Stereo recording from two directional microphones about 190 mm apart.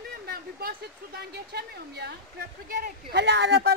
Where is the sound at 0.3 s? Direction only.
55° right (ahead or behind).